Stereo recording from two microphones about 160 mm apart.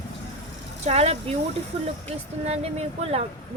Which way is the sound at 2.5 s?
40° right (ahead or behind).